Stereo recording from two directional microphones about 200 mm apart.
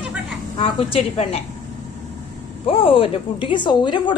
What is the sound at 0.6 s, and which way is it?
Speech, 30° left (ahead or behind).